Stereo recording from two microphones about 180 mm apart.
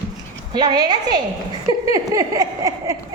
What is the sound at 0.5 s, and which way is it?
Speech, 25° right (ahead or behind).